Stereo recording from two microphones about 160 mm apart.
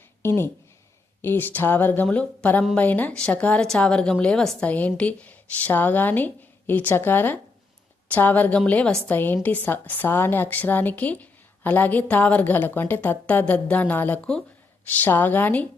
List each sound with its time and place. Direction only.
0.2 s a woman's voice: 15° left (ahead or behind)